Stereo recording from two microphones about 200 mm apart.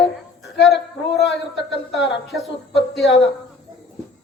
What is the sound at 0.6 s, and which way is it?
Speech, centre (ahead or behind).